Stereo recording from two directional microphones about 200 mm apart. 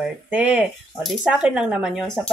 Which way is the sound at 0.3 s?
5° right (ahead or behind).